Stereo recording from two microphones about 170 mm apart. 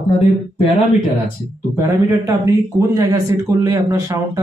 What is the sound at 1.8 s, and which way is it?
A man's voice, 20° right (ahead or behind).